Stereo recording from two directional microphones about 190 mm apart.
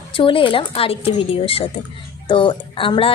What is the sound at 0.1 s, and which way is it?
Speech, 25° left (ahead or behind).